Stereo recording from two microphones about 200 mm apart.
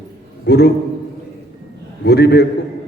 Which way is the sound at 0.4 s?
55° left (ahead or behind).